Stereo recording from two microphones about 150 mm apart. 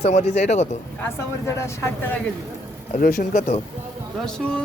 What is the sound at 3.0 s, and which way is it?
Speech, 75° left (ahead or behind).